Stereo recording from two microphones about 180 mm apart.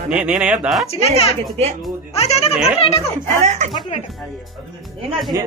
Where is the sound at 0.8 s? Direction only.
35° left (ahead or behind).